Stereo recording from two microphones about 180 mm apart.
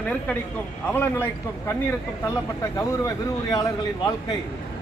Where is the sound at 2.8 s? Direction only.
20° left (ahead or behind).